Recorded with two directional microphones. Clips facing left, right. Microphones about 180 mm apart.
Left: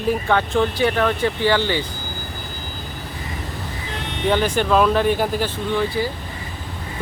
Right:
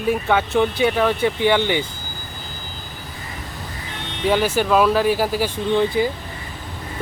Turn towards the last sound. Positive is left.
turn(degrees=-20)  # may be behind; listen again after turning